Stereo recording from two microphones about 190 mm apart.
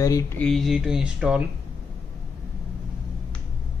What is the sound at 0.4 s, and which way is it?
Speech, centre (ahead or behind).